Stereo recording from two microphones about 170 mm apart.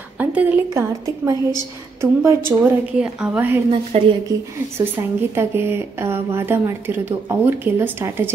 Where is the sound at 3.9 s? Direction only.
35° right (ahead or behind).